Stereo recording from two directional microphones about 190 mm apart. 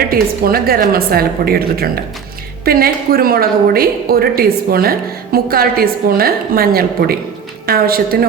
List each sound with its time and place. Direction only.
0.1 s a woman's voice: 50° right (ahead or behind)